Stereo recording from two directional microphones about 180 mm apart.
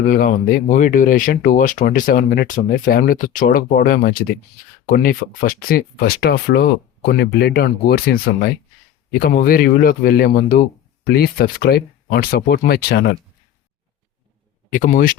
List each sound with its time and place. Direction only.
0.0 s speech: 50° left (ahead or behind)
14.7 s speech: 45° left (ahead or behind)